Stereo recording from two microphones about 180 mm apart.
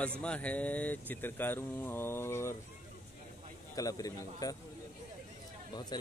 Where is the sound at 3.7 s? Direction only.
20° left (ahead or behind).